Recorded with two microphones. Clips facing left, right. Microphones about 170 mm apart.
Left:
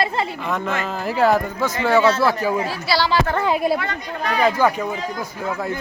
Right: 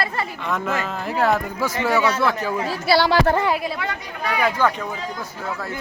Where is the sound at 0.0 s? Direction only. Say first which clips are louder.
Left 4 dB; 20° left (ahead or behind).